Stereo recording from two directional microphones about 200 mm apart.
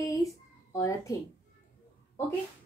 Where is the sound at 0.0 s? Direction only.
15° left (ahead or behind).